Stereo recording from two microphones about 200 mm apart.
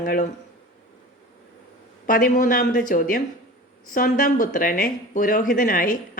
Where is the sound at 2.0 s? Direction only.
45° left (ahead or behind).